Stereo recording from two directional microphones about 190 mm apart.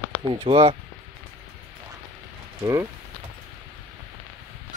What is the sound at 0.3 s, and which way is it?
Speech, 30° right (ahead or behind).